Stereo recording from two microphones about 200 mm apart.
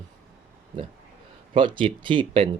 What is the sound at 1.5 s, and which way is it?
Speech, 25° right (ahead or behind).